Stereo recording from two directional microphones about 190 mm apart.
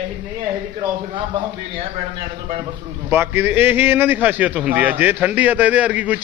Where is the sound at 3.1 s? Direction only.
10° right (ahead or behind).